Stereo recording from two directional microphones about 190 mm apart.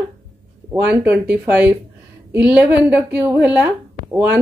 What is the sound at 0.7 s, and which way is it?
A woman's voice, 10° right (ahead or behind).